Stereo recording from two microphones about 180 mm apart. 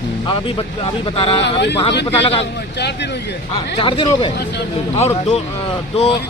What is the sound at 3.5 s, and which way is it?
Speech, 30° left (ahead or behind).